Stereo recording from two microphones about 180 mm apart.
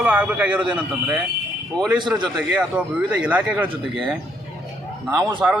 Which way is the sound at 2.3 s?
5° right (ahead or behind).